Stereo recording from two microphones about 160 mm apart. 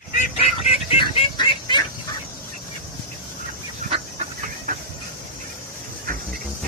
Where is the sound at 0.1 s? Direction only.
50° left (ahead or behind); by 1.8 s 30° left (ahead or behind).